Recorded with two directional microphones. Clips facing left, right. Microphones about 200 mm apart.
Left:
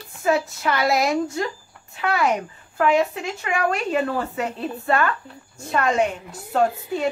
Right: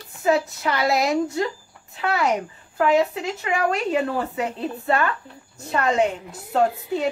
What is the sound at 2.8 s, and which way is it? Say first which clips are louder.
A woman's voice: even; 20° right (ahead or behind).